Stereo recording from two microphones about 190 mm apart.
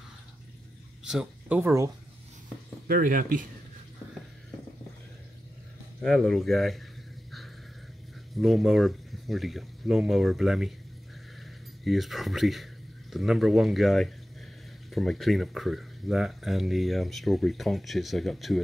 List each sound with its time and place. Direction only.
1.0 s speech: 5° right (ahead or behind)
2.9 s speech: 45° right (ahead or behind)
6.0 s speech: centre (ahead or behind)
8.4 s speech: centre (ahead or behind)
11.8 s speech: centre (ahead or behind)